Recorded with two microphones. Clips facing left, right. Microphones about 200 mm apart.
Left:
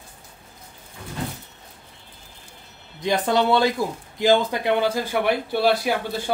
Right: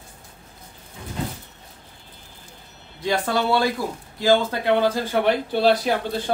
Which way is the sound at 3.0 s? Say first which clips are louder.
Left 2 dB; 20° left (ahead or behind).